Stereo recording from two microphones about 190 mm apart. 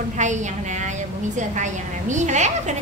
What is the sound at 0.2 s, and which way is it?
A woman's voice, 40° right (ahead or behind).